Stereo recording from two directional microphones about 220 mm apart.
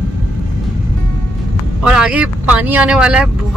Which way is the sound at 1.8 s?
5° right (ahead or behind).